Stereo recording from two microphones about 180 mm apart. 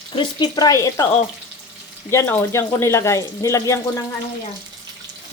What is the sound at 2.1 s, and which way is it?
Speech, 15° left (ahead or behind).